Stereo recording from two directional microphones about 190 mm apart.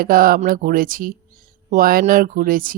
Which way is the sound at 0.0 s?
50° right (ahead or behind).